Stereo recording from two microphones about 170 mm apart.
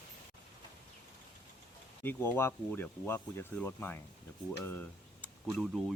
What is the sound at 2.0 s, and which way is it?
Speech, 10° left (ahead or behind).